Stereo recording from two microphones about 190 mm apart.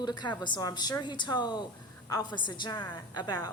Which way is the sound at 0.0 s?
25° left (ahead or behind).